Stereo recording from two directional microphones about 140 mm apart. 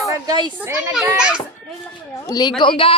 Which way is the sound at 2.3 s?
30° left (ahead or behind).